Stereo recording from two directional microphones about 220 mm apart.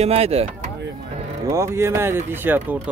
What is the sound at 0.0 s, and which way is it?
Speech, 30° right (ahead or behind).